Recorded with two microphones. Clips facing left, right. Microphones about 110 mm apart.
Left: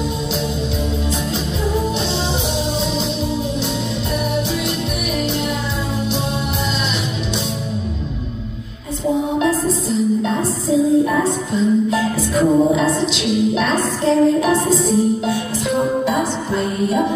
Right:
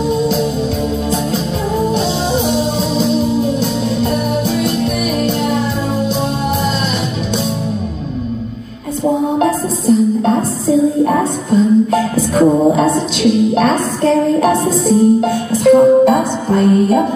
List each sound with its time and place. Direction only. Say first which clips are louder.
1.9 s music: right 5 dB; 45° right (ahead or behind)
9.4 s music: right 3 dB; 50° right (ahead or behind)